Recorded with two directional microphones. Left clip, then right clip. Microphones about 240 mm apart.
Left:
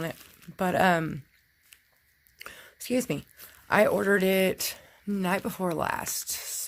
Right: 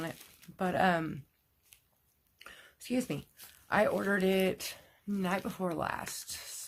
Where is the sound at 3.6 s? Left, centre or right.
Left.